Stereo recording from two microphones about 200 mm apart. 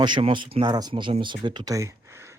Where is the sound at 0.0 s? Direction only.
25° right (ahead or behind).